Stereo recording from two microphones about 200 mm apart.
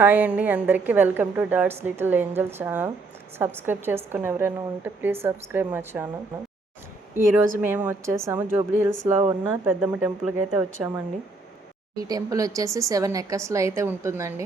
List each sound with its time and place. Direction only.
0.0 s a woman's voice: 10° right (ahead or behind)
7.2 s speech: 45° right (ahead or behind)
7.6 s a woman's voice: 10° right (ahead or behind)